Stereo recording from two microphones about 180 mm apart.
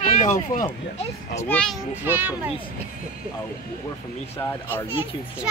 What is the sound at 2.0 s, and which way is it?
Speech, 10° right (ahead or behind).